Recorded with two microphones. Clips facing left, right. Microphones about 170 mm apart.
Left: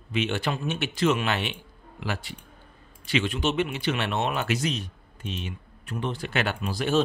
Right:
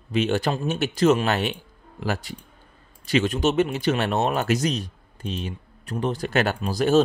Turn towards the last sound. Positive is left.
turn(degrees=-40)  # may be behind; listen again after turning